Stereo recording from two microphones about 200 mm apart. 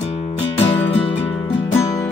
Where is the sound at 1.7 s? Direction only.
15° left (ahead or behind).